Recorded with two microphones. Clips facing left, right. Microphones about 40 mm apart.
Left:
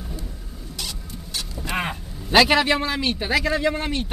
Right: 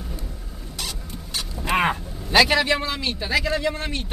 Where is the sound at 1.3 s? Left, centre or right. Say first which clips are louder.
Right 4 dB; right.